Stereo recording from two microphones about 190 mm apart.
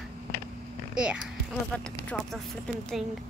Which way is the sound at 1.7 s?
5° left (ahead or behind).